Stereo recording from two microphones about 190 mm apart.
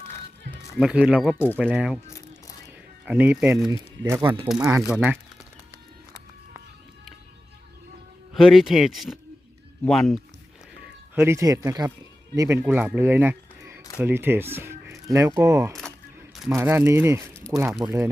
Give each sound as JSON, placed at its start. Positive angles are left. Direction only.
{"t": 0.8, "sound": "speech", "side_deg": -5}
{"t": 2.0, "sound": "music", "side_deg": 15}
{"t": 3.1, "sound": "speech", "side_deg": -10}
{"t": 8.4, "sound": "speech", "side_deg": 0}
{"t": 10.8, "sound": "speech", "side_deg": -10}
{"t": 15.7, "sound": "a sound", "side_deg": 5}
{"t": 16.5, "sound": "speech", "side_deg": -10}